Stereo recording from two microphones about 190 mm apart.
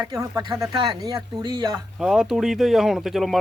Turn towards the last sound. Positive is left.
turn(degrees=0)  # may be behind; listen again after turning